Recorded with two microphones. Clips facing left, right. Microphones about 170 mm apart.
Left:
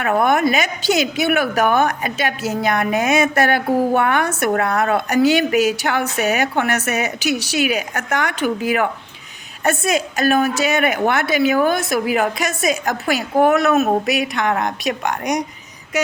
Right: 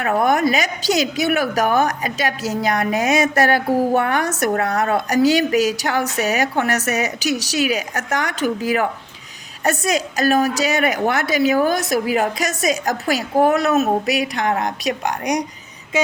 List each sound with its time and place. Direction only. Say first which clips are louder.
0.0 s a woman's voice: left 1 dB; 40° right (ahead or behind)